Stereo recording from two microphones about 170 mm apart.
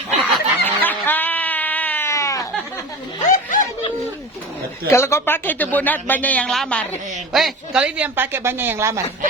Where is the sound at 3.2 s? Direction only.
50° left (ahead or behind).